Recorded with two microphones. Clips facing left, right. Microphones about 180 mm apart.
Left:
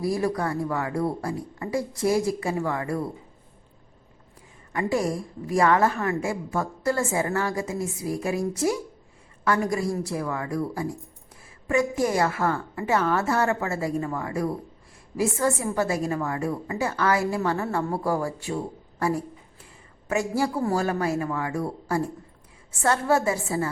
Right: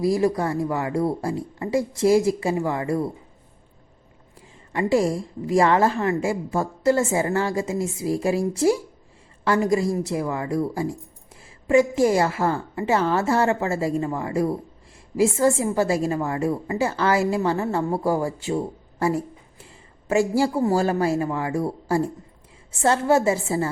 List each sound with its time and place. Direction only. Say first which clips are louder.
0.0 s a woman's voice: right 4 dB; 20° right (ahead or behind)
4.7 s a woman's voice: right 4 dB; 25° right (ahead or behind)